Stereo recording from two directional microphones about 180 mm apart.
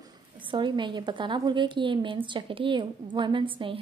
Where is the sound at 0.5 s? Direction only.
25° right (ahead or behind).